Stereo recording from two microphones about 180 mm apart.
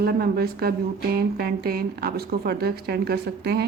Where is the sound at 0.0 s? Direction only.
60° right (ahead or behind).